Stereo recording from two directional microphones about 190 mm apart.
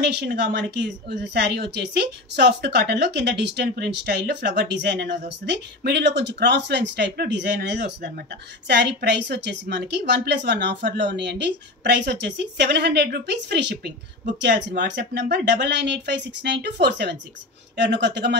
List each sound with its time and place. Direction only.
0.0 s a woman's voice: 60° right (ahead or behind)